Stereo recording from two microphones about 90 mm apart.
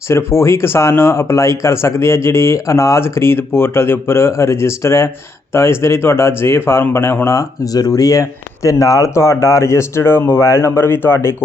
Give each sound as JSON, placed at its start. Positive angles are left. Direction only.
{"t": 0.1, "sound": "speech", "side_deg": 30}
{"t": 7.3, "sound": "speech", "side_deg": 40}